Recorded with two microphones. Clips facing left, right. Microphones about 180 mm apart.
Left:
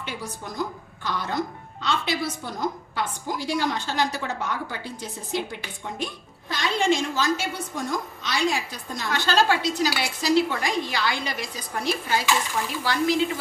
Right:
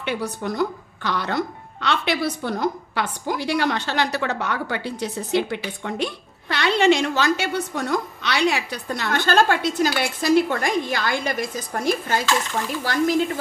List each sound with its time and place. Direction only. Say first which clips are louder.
0.0 s speech: right 8 dB; 65° right (ahead or behind); by 13.2 s 45° right (ahead or behind)